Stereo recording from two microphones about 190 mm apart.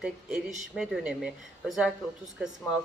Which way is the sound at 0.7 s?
5° right (ahead or behind).